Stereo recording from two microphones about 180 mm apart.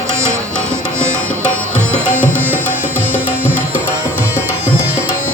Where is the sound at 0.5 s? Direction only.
5° left (ahead or behind).